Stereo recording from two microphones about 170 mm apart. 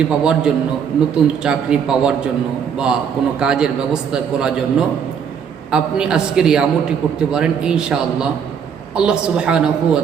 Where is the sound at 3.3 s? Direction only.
5° right (ahead or behind).